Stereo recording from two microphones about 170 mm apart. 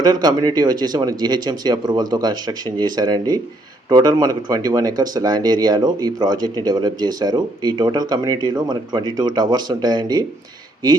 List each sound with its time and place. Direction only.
0.0 s speech: 25° right (ahead or behind)